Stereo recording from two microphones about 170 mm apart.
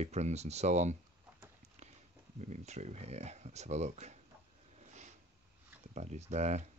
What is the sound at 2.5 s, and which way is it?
Speech, 40° right (ahead or behind).